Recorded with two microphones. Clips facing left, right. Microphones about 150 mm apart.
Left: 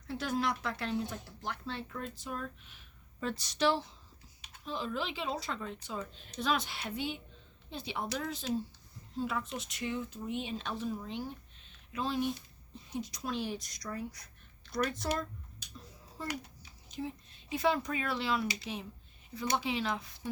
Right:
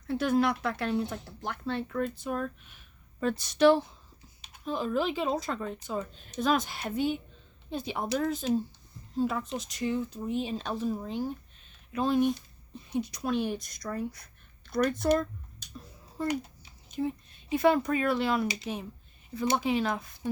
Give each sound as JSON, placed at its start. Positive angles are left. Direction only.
{"t": 0.1, "sound": "a woman's voice", "side_deg": -55}
{"t": 11.9, "sound": "a woman's voice", "side_deg": -50}
{"t": 16.2, "sound": "a woman's voice", "side_deg": -55}